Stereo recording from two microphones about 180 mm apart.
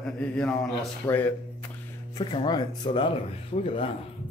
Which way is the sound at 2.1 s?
25° left (ahead or behind).